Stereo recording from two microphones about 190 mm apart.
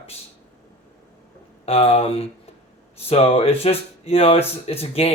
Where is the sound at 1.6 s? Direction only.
30° left (ahead or behind).